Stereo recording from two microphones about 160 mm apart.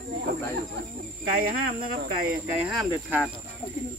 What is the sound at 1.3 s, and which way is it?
Speech, 60° right (ahead or behind).